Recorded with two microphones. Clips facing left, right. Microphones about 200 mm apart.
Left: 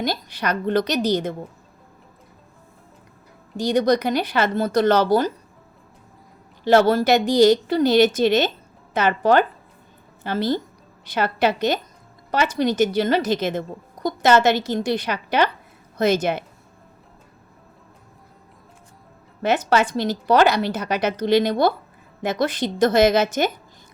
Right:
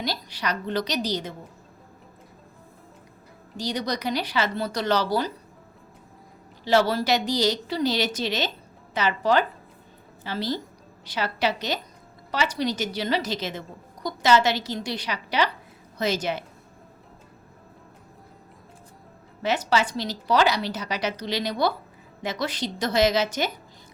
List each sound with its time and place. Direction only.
0.0 s a woman's voice: 50° left (ahead or behind)
3.6 s a woman's voice: 50° left (ahead or behind)
6.7 s a woman's voice: 50° left (ahead or behind)
19.4 s a woman's voice: 55° left (ahead or behind)